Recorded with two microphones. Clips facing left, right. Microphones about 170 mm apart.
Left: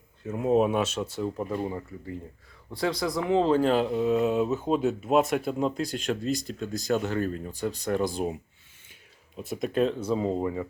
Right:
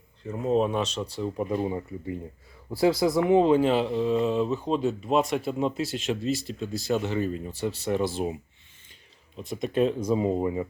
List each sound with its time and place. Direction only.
0.3 s speech: 5° left (ahead or behind)
1.4 s speech: 15° right (ahead or behind)
3.4 s speech: 10° right (ahead or behind)